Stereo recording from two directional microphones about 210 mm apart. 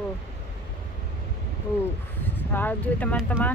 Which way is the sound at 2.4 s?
10° left (ahead or behind).